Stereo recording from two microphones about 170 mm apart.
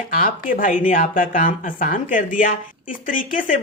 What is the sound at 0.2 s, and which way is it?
Speech, 55° left (ahead or behind).